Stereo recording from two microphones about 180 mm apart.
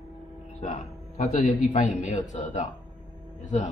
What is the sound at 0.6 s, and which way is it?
A man's voice, 45° left (ahead or behind).